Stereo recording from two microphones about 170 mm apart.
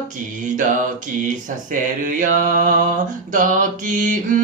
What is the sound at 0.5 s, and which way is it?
Mantra, 50° right (ahead or behind).